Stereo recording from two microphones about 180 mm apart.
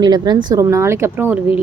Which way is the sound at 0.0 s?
25° right (ahead or behind).